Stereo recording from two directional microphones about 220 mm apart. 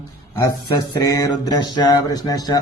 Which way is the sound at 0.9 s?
15° left (ahead or behind).